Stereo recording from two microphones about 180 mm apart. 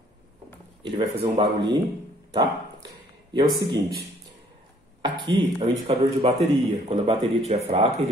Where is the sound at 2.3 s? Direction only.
25° right (ahead or behind).